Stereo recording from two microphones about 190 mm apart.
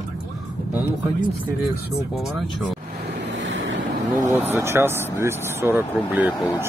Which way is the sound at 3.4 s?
75° right (ahead or behind).